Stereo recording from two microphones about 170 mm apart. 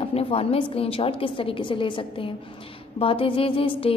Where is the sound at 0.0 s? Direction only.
30° left (ahead or behind).